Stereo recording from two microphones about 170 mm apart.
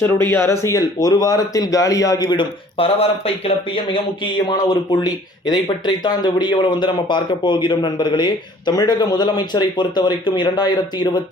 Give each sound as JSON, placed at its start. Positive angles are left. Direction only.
{"t": 0.0, "sound": "speech", "side_deg": 15}